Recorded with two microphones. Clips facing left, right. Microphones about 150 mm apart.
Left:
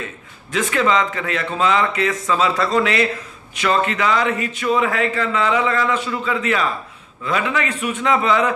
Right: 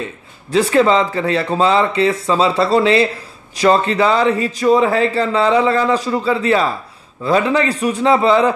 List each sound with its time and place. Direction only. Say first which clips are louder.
0.0 s speech: right 4 dB; 35° right (ahead or behind)